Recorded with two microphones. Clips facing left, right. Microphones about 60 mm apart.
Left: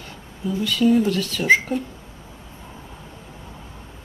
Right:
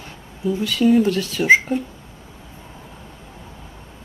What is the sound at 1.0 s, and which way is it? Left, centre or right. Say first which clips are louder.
Speech: right 2 dB; right.